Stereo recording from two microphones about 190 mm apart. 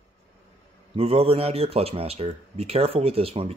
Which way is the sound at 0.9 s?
30° right (ahead or behind).